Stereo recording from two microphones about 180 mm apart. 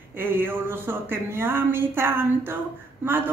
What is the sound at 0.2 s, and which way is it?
A woman's voice, 10° right (ahead or behind).